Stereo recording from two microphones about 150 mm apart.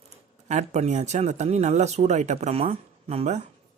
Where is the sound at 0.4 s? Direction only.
50° right (ahead or behind).